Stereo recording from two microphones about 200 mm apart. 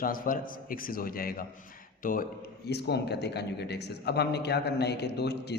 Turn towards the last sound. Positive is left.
turn(degrees=55)  # may be behind; listen again after turning